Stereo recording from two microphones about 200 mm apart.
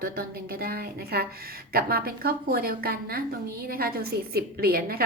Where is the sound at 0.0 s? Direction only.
50° right (ahead or behind).